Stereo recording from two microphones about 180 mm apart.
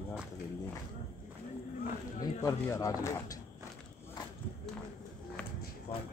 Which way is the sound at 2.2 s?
20° left (ahead or behind).